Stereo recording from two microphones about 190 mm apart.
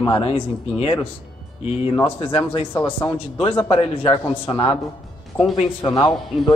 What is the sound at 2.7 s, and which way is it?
Speech, 10° left (ahead or behind).